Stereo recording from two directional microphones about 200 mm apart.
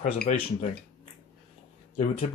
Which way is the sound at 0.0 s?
40° left (ahead or behind).